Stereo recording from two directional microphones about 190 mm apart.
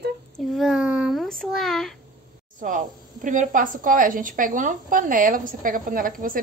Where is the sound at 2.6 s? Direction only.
45° right (ahead or behind).